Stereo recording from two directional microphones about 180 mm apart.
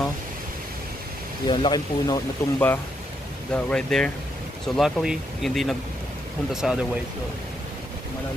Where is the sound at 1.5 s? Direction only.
25° left (ahead or behind); by 6.8 s 5° right (ahead or behind).